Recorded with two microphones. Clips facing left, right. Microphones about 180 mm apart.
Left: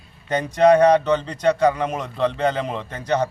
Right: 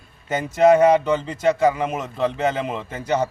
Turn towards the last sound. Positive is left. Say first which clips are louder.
# even
turn(degrees=-5)  # may be behind; listen again after turning